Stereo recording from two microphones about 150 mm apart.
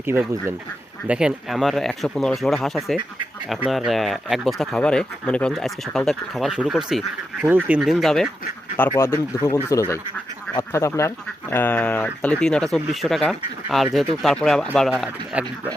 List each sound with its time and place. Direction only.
0.0 s speech: 15° right (ahead or behind)
7.4 s speech: 15° right (ahead or behind)
7.8 s speech: 5° right (ahead or behind)
9.0 s speech: 15° left (ahead or behind)
10.6 s speech: 20° left (ahead or behind); by 15.7 s 5° right (ahead or behind)